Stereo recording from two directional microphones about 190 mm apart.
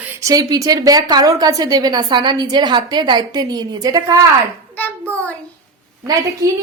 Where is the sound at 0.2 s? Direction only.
20° right (ahead or behind).